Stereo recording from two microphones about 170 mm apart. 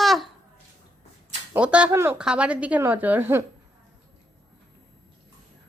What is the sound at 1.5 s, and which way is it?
A woman's voice, 5° right (ahead or behind).